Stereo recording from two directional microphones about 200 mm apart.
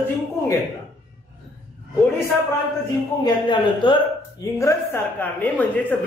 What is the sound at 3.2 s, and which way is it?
Speech, 25° left (ahead or behind).